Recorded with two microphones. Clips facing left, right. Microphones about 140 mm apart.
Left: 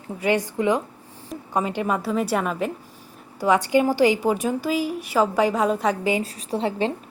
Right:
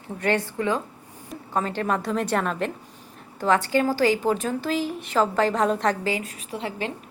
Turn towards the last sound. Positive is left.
turn(degrees=30)  # may be behind; listen again after turning